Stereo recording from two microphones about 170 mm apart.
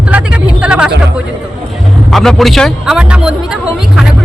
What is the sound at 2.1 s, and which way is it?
Speech, centre (ahead or behind).